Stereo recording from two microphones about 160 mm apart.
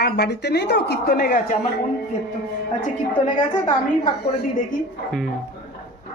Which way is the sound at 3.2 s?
50° left (ahead or behind).